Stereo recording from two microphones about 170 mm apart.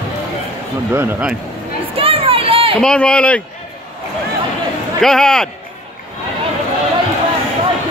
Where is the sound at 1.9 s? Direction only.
35° right (ahead or behind).